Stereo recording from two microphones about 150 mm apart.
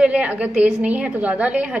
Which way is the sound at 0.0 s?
10° right (ahead or behind).